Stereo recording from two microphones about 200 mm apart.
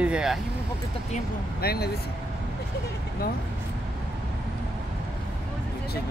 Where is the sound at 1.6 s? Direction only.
50° left (ahead or behind).